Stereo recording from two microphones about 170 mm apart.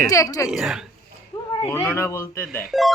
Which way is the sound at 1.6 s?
15° left (ahead or behind).